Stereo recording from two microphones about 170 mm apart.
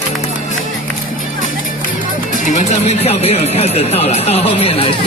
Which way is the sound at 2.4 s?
45° left (ahead or behind).